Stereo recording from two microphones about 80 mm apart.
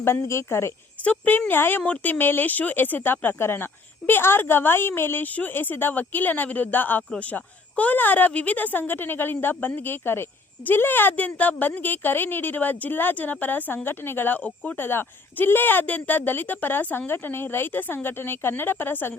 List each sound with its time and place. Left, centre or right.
0.0 s a woman's voice: left
1.0 s speech: centre